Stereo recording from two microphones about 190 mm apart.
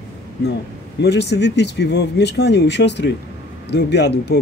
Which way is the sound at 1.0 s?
60° left (ahead or behind).